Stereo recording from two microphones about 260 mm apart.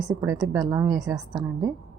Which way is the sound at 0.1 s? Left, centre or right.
Centre.